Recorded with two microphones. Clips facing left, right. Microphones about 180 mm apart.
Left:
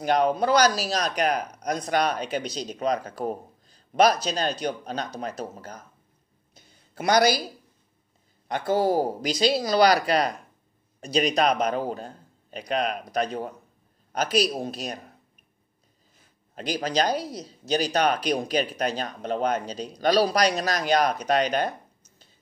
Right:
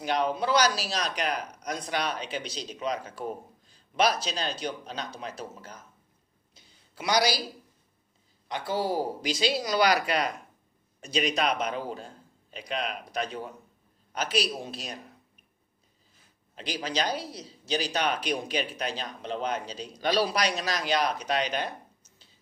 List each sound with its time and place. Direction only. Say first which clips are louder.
0.0 s speech: left 5 dB; 45° left (ahead or behind)
6.5 s a sound: left 9 dB; 50° left (ahead or behind)
8.5 s a man's voice: left 6 dB; 50° left (ahead or behind)
16.5 s speech: left 6 dB; 45° left (ahead or behind)